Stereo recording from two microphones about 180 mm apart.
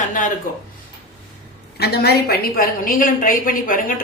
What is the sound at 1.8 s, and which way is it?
A woman's voice, 65° left (ahead or behind).